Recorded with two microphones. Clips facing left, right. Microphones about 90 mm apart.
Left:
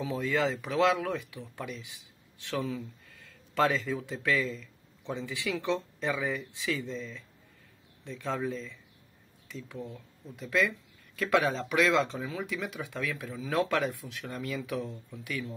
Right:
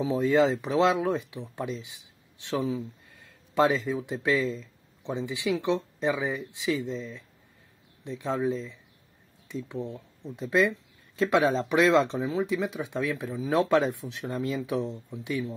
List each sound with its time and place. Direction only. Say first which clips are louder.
0.0 s speech: right 7 dB; 20° right (ahead or behind)